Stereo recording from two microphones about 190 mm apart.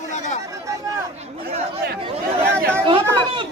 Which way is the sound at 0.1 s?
40° left (ahead or behind).